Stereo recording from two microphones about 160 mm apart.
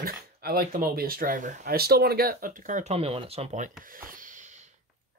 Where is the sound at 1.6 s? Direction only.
75° right (ahead or behind); by 3.7 s 50° right (ahead or behind).